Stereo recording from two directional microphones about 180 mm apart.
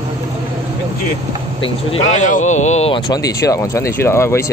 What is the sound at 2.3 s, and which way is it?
Speech, 40° left (ahead or behind).